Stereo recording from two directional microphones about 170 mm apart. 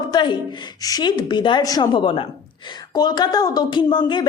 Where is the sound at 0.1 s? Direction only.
25° left (ahead or behind).